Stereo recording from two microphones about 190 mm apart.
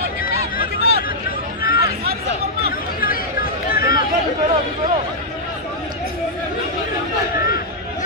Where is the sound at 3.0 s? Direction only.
50° left (ahead or behind).